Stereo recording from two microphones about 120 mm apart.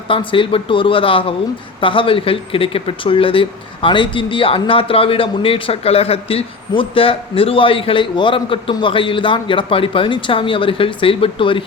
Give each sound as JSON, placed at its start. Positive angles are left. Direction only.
{"t": 0.1, "sound": "speech", "side_deg": 45}